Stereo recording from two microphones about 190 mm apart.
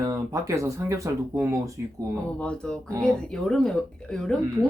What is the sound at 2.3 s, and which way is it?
Speech, 5° left (ahead or behind).